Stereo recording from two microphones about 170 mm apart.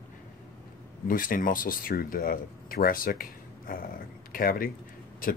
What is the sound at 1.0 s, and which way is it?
Speech, 55° left (ahead or behind).